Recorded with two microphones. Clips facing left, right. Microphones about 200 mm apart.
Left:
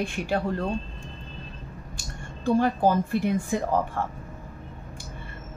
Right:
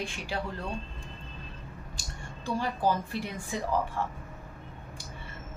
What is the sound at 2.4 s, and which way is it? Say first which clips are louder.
Speech: left 7 dB; 50° left (ahead or behind).